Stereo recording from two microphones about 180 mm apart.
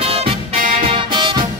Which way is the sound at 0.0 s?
30° right (ahead or behind).